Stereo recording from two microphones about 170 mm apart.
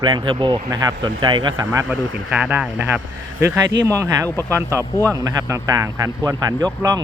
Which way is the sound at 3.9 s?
20° right (ahead or behind).